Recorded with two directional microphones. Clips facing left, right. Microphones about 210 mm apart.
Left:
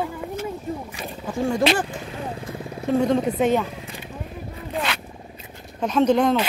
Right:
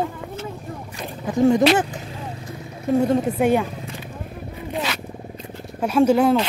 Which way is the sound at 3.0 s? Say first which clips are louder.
Even; 10° right (ahead or behind).